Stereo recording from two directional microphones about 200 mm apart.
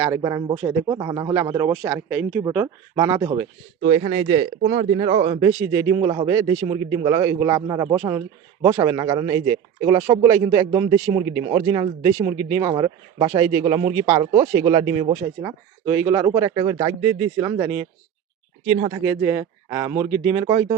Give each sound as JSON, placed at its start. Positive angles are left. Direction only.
{"t": 0.0, "sound": "speech", "side_deg": -20}
{"t": 2.9, "sound": "speech", "side_deg": -20}
{"t": 3.8, "sound": "speech", "side_deg": -35}
{"t": 18.7, "sound": "speech", "side_deg": -25}
{"t": 19.0, "sound": "speech", "side_deg": -15}